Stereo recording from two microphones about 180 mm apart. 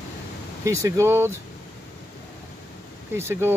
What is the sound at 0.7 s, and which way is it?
Speech, 15° right (ahead or behind).